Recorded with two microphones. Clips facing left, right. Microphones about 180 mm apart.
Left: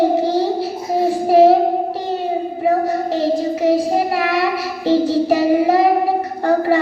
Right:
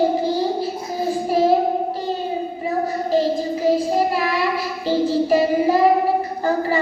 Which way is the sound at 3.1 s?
75° left (ahead or behind).